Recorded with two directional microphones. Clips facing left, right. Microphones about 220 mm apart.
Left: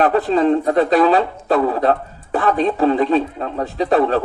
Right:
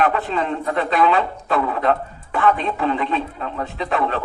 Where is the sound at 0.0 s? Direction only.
35° left (ahead or behind).